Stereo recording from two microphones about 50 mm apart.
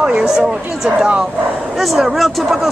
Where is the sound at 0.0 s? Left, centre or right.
Centre.